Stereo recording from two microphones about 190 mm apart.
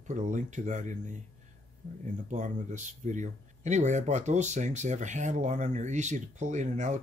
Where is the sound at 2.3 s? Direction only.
40° right (ahead or behind).